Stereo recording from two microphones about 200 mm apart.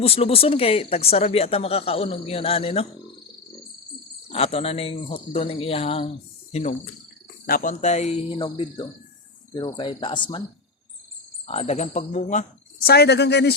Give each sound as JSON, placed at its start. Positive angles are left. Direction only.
{"t": 0.0, "sound": "speech", "side_deg": 30}
{"t": 4.3, "sound": "speech", "side_deg": 30}
{"t": 11.4, "sound": "speech", "side_deg": 35}